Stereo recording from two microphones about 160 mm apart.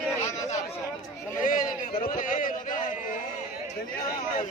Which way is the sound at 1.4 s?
55° left (ahead or behind).